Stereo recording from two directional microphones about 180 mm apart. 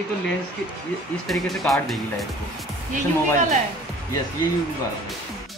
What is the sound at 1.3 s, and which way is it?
A woman's voice, centre (ahead or behind).